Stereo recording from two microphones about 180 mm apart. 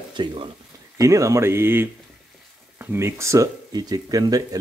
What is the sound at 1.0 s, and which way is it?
Speech, 15° right (ahead or behind).